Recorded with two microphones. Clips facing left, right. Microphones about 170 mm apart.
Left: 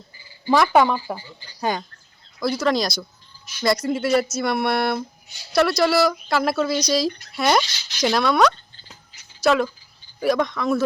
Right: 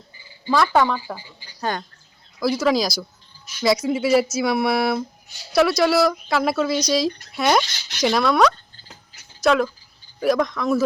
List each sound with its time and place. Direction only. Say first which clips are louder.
0.4 s speech: left 2 dB; 15° left (ahead or behind)
2.4 s speech: right 2 dB; 5° right (ahead or behind)
7.7 s speech: right 1 dB; 55° right (ahead or behind)
8.0 s speech: right 1 dB; centre (ahead or behind)